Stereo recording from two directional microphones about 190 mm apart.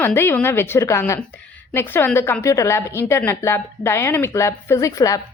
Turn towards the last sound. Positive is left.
turn(degrees=15)  # may be behind; listen again after turning